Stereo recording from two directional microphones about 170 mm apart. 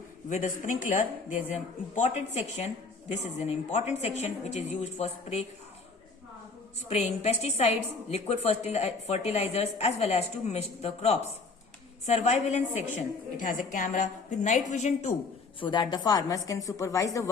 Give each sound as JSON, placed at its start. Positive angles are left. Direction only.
{"t": 0.3, "sound": "a woman's voice", "side_deg": 50}
{"t": 6.8, "sound": "a woman's voice", "side_deg": 40}
{"t": 15.6, "sound": "a woman's voice", "side_deg": 25}